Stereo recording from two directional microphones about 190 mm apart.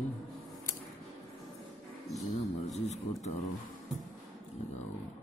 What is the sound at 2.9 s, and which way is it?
Speech, 35° left (ahead or behind).